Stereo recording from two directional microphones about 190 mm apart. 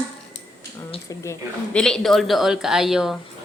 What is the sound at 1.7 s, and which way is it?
Speech, 5° left (ahead or behind).